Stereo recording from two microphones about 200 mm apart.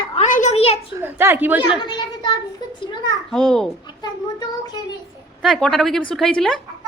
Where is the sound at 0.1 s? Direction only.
35° left (ahead or behind).